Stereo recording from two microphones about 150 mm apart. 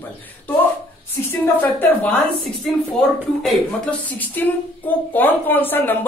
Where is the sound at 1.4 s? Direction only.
10° left (ahead or behind).